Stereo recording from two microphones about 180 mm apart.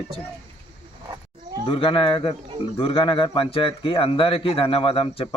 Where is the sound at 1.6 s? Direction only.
30° left (ahead or behind).